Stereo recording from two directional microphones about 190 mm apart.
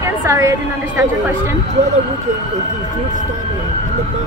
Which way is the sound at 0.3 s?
15° right (ahead or behind).